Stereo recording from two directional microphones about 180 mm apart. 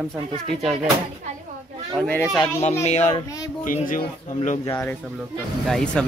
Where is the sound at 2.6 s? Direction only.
40° left (ahead or behind).